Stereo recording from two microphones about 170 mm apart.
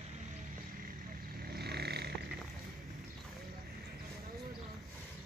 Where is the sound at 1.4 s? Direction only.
70° right (ahead or behind).